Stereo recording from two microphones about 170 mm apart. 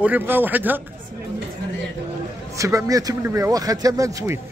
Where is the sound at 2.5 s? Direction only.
20° right (ahead or behind).